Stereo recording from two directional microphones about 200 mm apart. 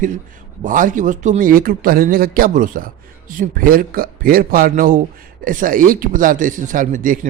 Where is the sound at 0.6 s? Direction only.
40° right (ahead or behind).